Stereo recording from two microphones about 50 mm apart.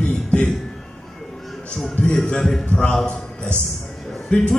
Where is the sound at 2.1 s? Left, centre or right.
Centre.